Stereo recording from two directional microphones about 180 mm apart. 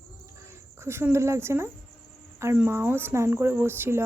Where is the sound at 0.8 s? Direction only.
15° right (ahead or behind).